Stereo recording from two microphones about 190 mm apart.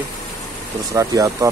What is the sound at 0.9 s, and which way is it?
Speech, 15° right (ahead or behind).